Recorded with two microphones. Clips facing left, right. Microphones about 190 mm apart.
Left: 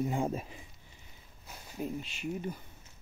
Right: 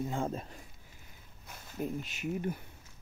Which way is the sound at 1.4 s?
10° left (ahead or behind).